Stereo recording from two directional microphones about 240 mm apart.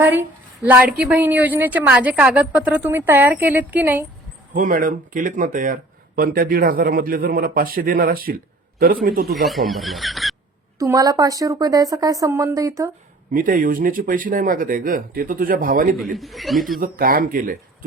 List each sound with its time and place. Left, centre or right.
0.0 s a woman's voice: centre
4.5 s speech: right
9.3 s speech: centre
10.8 s a woman's voice: centre
13.3 s speech: right
16.1 s speech: centre
16.8 s speech: right